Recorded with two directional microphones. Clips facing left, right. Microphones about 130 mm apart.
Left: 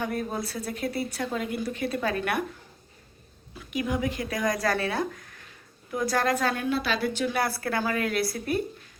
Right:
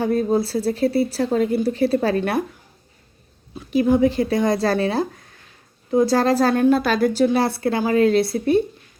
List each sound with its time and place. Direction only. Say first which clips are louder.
0.0 s speech: right 11 dB; 30° right (ahead or behind)
3.5 s speech: right 12 dB; 30° right (ahead or behind)
7.3 s speech: right 8 dB; 25° right (ahead or behind)